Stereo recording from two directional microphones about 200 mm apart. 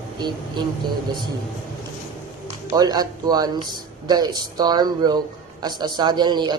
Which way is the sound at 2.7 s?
20° right (ahead or behind).